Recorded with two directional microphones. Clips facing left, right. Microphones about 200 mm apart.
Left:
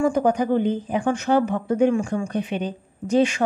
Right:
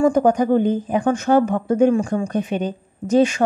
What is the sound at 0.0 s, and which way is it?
A woman's voice, 45° right (ahead or behind).